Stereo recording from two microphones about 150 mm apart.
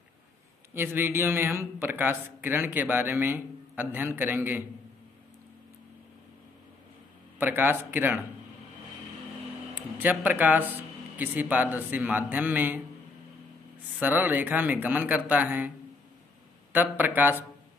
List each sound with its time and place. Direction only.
0.7 s speech: 15° right (ahead or behind)
7.3 s speech: 15° right (ahead or behind)
9.8 s speech: 10° right (ahead or behind)
13.9 s speech: 10° right (ahead or behind)
16.7 s speech: 10° right (ahead or behind)